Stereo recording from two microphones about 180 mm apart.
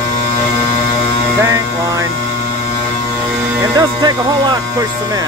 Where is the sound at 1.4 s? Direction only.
15° right (ahead or behind).